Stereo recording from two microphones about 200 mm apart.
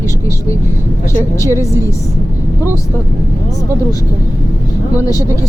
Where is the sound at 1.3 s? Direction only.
15° left (ahead or behind).